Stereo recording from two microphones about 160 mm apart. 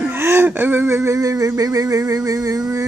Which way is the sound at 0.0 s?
15° right (ahead or behind).